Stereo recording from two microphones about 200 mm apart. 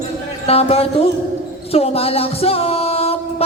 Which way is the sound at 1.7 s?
30° left (ahead or behind).